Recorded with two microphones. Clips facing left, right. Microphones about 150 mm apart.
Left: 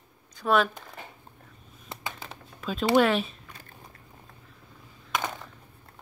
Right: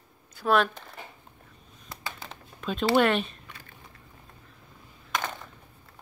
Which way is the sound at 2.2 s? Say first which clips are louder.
Right 2 dB; centre (ahead or behind).